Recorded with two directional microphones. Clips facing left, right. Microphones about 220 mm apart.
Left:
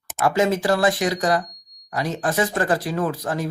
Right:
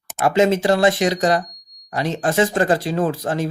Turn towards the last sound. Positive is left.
turn(degrees=-25)  # may be behind; listen again after turning